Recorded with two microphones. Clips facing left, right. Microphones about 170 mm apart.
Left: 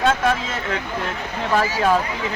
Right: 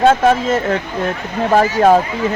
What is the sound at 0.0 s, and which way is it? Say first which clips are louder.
Speech: right 8 dB; 40° right (ahead or behind).